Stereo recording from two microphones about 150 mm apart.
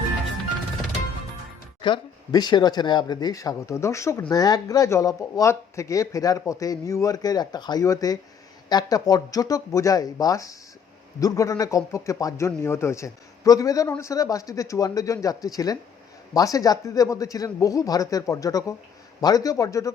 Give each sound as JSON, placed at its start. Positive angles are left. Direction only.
{"t": 1.8, "sound": "speech", "side_deg": 30}